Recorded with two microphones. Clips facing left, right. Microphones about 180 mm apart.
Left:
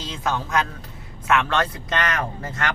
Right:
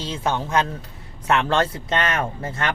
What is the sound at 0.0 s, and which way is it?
Speech, 30° right (ahead or behind).